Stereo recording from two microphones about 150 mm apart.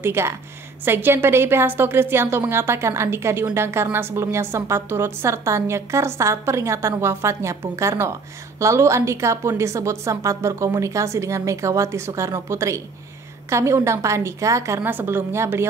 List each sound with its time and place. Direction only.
0.0 s a woman's voice: 15° right (ahead or behind)